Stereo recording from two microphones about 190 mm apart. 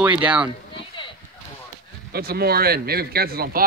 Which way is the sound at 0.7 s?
25° left (ahead or behind).